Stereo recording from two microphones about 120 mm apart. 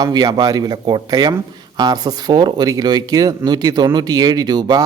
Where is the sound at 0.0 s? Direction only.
35° right (ahead or behind).